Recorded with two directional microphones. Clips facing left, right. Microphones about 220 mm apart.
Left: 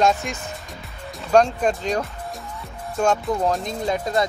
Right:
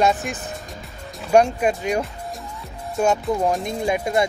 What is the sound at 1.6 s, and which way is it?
Speech, 10° right (ahead or behind).